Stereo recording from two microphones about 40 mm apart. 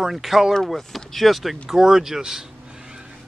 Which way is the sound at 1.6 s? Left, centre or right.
Centre.